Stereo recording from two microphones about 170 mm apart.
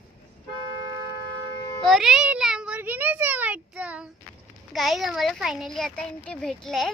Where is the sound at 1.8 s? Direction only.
Centre (ahead or behind).